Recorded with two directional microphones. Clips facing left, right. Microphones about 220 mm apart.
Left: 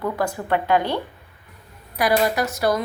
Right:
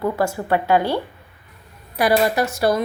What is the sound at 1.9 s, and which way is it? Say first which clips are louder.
Speech: right 2 dB; 30° right (ahead or behind).